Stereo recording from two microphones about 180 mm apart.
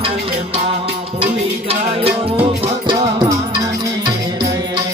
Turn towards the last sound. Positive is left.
turn(degrees=-25)  # may be behind; listen again after turning